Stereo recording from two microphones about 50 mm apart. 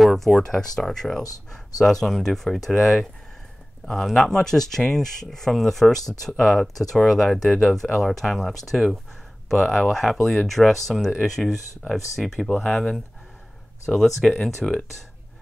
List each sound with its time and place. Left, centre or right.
0.0 s speech: centre
12.6 s speech: left
13.8 s speech: centre